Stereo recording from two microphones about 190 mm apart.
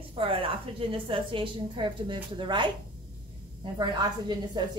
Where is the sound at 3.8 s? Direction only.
20° right (ahead or behind).